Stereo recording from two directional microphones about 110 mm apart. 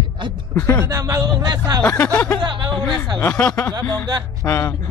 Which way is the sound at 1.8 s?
15° left (ahead or behind).